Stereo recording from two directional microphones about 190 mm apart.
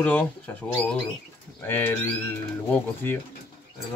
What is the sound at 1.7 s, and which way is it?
Speech, 10° left (ahead or behind).